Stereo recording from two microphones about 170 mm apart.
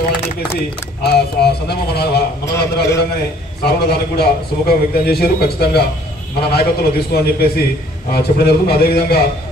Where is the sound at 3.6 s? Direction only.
70° left (ahead or behind).